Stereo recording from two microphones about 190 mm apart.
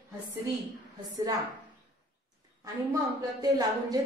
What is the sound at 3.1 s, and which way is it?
Speech, 20° right (ahead or behind).